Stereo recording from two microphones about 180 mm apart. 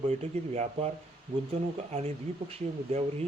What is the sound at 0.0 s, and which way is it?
Speech, 35° right (ahead or behind).